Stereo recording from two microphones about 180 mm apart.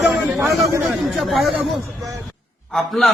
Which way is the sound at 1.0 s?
Centre (ahead or behind).